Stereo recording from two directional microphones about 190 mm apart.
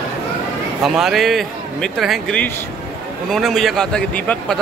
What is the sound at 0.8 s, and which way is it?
Speech, centre (ahead or behind).